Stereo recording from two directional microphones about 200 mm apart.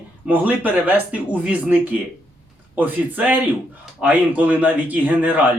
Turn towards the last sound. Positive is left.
turn(degrees=-10)  # may be behind; listen again after turning